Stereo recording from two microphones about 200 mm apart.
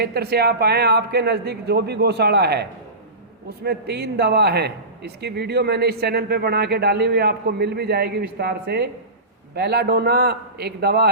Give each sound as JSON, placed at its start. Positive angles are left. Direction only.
{"t": 0.0, "sound": "a man's voice", "side_deg": -55}